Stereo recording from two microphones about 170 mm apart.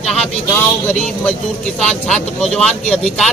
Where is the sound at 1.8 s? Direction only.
5° left (ahead or behind).